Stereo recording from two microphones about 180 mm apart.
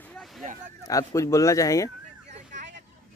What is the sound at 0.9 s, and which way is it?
Speech, 20° left (ahead or behind).